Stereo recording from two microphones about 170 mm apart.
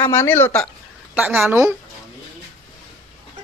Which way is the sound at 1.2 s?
10° right (ahead or behind).